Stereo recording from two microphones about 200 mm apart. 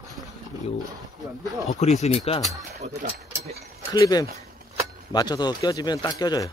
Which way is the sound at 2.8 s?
35° right (ahead or behind).